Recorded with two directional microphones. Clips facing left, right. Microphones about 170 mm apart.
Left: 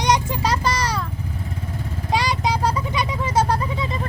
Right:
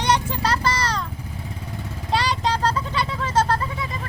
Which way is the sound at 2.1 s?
15° left (ahead or behind).